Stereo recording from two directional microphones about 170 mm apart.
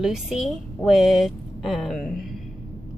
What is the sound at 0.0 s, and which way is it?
Speech, centre (ahead or behind).